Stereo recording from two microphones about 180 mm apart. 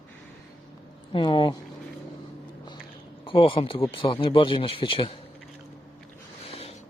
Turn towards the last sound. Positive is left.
turn(degrees=35)  # may be behind; listen again after turning